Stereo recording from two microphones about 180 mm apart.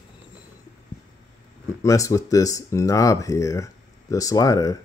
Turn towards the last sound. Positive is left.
turn(degrees=20)  # may be behind; listen again after turning